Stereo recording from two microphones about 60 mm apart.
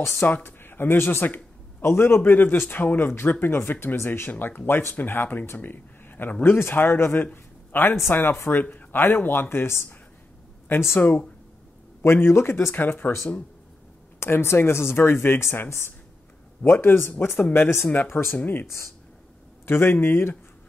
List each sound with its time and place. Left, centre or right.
0.3 s speech: left
4.3 s speech: left
11.0 s speech: left
12.0 s speech: left
14.2 s speech: left